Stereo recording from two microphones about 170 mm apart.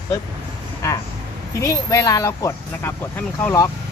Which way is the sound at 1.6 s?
20° left (ahead or behind).